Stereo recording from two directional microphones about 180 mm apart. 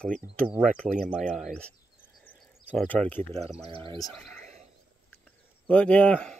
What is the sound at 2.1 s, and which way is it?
Insect, 5° left (ahead or behind).